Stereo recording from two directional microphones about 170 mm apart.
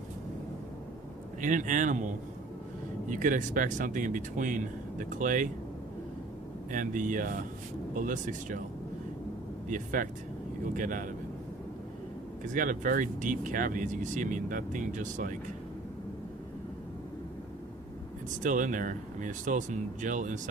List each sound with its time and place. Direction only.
1.4 s speech: 50° right (ahead or behind)
3.1 s speech: 50° right (ahead or behind)
6.7 s speech: 50° right (ahead or behind)
9.6 s speech: 50° right (ahead or behind)
12.5 s speech: 50° right (ahead or behind)
18.4 s speech: 50° right (ahead or behind)